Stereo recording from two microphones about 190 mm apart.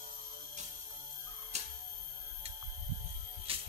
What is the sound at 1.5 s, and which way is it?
Music, 35° right (ahead or behind).